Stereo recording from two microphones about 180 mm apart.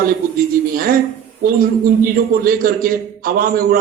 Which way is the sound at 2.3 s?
55° right (ahead or behind).